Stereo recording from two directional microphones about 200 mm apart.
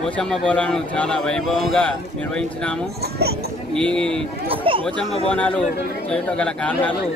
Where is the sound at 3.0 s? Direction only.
55° right (ahead or behind).